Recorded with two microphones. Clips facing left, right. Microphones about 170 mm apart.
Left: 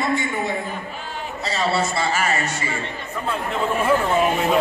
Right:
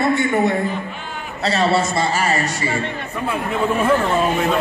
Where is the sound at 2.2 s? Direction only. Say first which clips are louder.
Right 3 dB; 35° right (ahead or behind).